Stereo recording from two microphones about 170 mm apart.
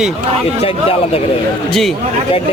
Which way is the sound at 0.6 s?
35° left (ahead or behind).